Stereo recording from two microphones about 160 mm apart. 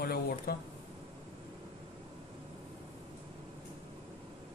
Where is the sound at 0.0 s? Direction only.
70° left (ahead or behind).